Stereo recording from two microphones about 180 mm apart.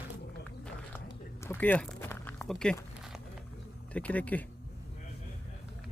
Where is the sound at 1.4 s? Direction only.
10° left (ahead or behind).